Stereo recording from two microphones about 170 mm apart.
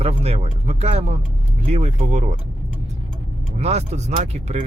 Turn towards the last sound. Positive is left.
turn(degrees=-40)  # may be behind; listen again after turning